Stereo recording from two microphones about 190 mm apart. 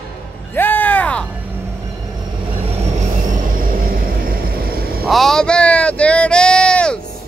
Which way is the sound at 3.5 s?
50° right (ahead or behind).